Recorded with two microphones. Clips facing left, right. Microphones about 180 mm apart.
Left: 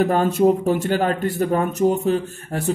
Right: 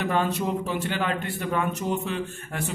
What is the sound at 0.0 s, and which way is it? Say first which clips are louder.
Speech: left 9 dB; 45° left (ahead or behind).